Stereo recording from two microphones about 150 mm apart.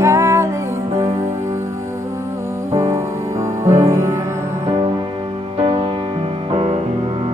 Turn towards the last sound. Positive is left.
turn(degrees=-45)  # may be behind; listen again after turning